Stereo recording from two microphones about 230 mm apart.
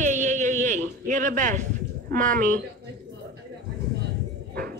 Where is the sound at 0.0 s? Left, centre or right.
Right.